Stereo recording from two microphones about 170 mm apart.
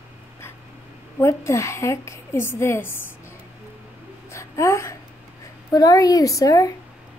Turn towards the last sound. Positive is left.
turn(degrees=20)  # may be behind; listen again after turning